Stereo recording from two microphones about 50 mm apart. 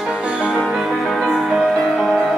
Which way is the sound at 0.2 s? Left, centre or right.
Centre.